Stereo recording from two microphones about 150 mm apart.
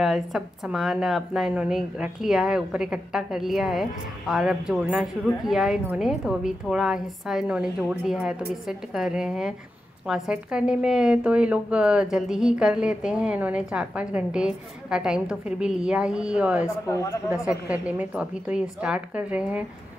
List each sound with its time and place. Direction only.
0.0 s a woman's voice: centre (ahead or behind)
16.8 s speech: 20° left (ahead or behind)
17.3 s a woman's voice: 10° right (ahead or behind)